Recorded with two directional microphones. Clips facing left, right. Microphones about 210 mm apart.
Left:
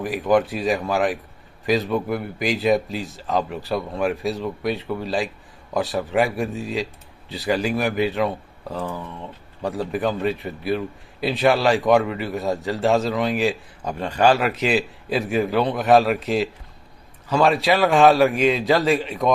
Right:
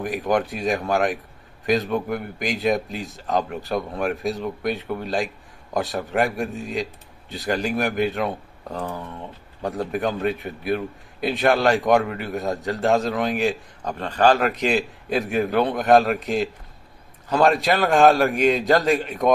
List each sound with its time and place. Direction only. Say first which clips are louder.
0.0 s a man's voice: left 3 dB; centre (ahead or behind)
9.6 s a man's voice: left 1 dB; centre (ahead or behind)